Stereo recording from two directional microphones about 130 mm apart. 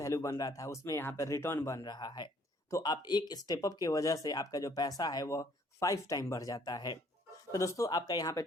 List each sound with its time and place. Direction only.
0.0 s speech: 25° left (ahead or behind)
1.8 s speech: 30° left (ahead or behind)